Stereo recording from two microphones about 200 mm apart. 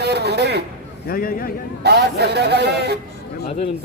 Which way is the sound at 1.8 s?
55° right (ahead or behind).